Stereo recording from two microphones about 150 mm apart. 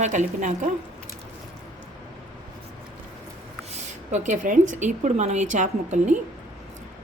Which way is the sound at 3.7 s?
50° right (ahead or behind).